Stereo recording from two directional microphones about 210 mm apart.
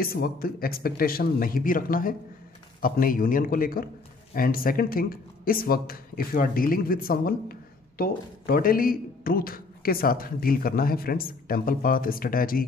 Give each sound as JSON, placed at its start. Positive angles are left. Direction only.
{"t": 0.0, "sound": "a man's voice", "side_deg": 45}